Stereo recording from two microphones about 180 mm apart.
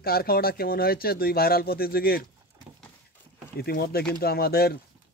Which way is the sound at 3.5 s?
60° left (ahead or behind).